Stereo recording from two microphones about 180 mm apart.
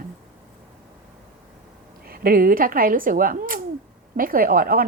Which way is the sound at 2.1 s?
55° right (ahead or behind).